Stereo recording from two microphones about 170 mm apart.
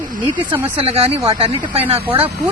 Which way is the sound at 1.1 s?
30° right (ahead or behind).